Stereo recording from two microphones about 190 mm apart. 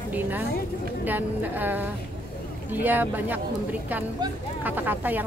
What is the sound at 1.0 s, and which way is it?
A woman's voice, 10° right (ahead or behind).